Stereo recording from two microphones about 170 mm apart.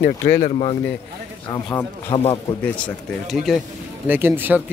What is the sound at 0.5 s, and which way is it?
Speech, 35° left (ahead or behind).